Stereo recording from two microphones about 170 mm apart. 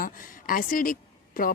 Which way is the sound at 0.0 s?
55° left (ahead or behind).